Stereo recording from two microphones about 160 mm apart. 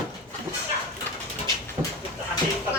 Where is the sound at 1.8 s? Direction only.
25° right (ahead or behind).